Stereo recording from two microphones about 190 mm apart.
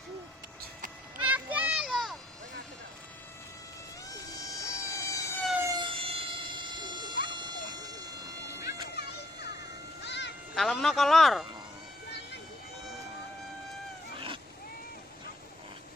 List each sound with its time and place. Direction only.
1.2 s a sound: 10° right (ahead or behind)
4.5 s train: 15° left (ahead or behind)
5.6 s vehicle: 25° right (ahead or behind)
9.0 s music: 60° left (ahead or behind)
10.5 s speech: centre (ahead or behind)